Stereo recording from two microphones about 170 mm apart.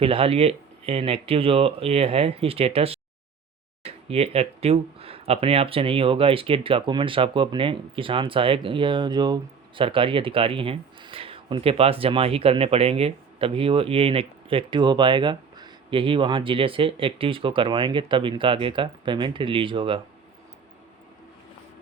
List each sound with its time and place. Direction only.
0.0 s speech: 35° right (ahead or behind)